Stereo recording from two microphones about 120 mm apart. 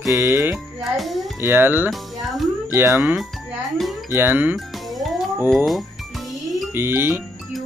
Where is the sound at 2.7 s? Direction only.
20° right (ahead or behind).